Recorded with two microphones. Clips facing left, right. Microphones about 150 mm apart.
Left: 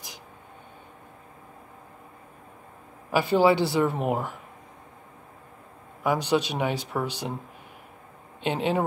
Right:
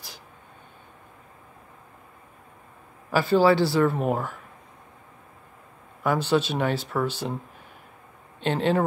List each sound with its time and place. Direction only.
3.1 s a man's voice: 20° left (ahead or behind)
6.0 s speech: 15° left (ahead or behind)
8.4 s speech: 10° left (ahead or behind)